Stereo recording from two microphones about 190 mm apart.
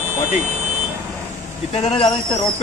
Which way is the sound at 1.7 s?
30° left (ahead or behind).